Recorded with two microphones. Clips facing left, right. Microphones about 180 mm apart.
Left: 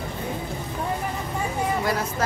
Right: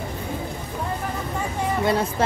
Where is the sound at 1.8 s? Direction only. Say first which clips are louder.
Right 4 dB; 25° right (ahead or behind).